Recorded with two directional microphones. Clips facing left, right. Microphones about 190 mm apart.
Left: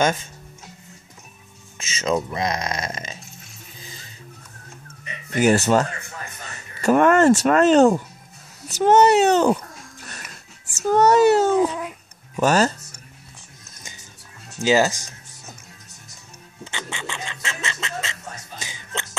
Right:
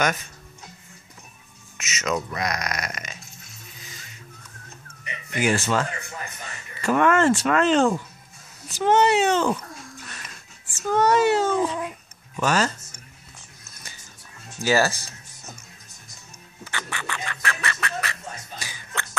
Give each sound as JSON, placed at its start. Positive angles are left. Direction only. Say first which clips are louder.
{"t": 0.0, "sound": "speech", "louder": "left 4 dB", "side_deg": 25}
{"t": 1.8, "sound": "speech", "louder": "left 4 dB", "side_deg": 30}
{"t": 3.8, "sound": "music", "louder": "left 4 dB", "side_deg": 30}
{"t": 5.3, "sound": "speech", "louder": "left 6 dB", "side_deg": 40}
{"t": 10.8, "sound": "a child's voice", "louder": "left 4 dB", "side_deg": 40}
{"t": 14.6, "sound": "speech", "louder": "left 3 dB", "side_deg": 20}
{"t": 16.6, "sound": "bird", "louder": "left 1 dB", "side_deg": 25}
{"t": 18.6, "sound": "hiccup", "louder": "left 4 dB", "side_deg": 20}